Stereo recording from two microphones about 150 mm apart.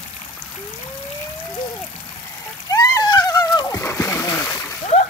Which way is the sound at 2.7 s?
25° left (ahead or behind).